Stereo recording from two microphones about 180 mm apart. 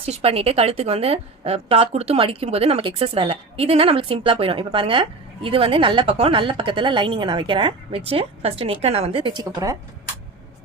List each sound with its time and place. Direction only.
0.0 s a woman's voice: 35° right (ahead or behind)